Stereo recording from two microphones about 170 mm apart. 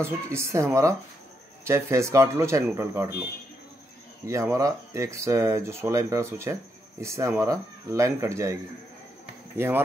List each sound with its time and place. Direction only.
0.0 s speech: 15° right (ahead or behind)
4.3 s speech: 15° right (ahead or behind)